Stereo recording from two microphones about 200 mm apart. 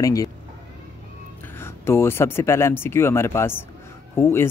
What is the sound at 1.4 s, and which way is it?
Speech, 10° left (ahead or behind).